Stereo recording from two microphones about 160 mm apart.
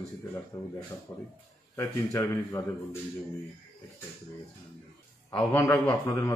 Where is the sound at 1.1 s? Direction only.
15° left (ahead or behind).